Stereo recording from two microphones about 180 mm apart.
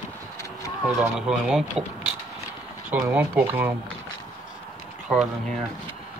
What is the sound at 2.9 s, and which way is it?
Speech, 10° right (ahead or behind).